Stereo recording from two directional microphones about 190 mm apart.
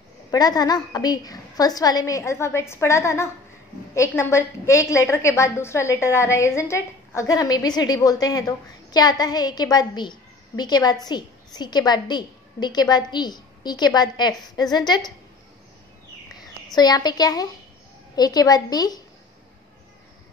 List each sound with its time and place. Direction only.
0.3 s a woman's voice: 20° left (ahead or behind)
16.7 s a woman's voice: 20° left (ahead or behind)